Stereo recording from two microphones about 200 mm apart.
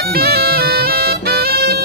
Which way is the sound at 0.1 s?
50° right (ahead or behind).